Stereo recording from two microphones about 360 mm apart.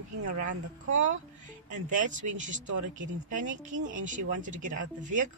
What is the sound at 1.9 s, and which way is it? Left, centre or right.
Speech, right.